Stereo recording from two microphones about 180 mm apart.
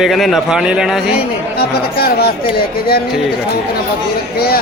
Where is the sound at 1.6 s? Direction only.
60° left (ahead or behind).